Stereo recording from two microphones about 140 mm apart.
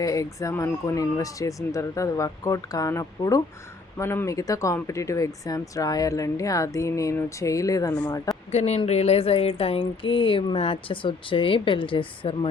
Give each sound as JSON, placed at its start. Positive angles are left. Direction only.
{"t": 0.0, "sound": "speech", "side_deg": 25}
{"t": 8.5, "sound": "speech", "side_deg": 50}